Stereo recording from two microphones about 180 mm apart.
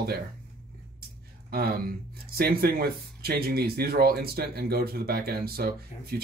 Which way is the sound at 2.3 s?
55° right (ahead or behind).